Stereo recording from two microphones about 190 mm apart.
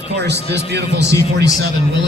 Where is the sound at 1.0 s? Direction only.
15° left (ahead or behind).